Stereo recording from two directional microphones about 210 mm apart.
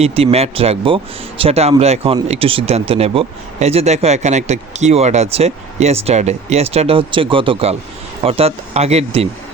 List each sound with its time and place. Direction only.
0.0 s speech: 30° right (ahead or behind)